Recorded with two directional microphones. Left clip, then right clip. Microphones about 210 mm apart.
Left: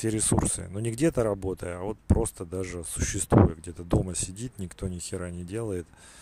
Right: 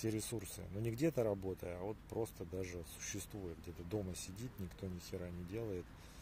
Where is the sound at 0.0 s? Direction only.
35° left (ahead or behind).